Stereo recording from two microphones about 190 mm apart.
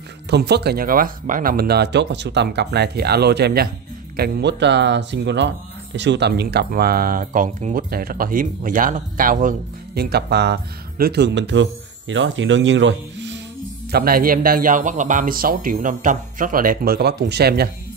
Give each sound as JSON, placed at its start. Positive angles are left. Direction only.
{"t": 0.3, "sound": "speech", "side_deg": -60}
{"t": 13.9, "sound": "speech", "side_deg": -50}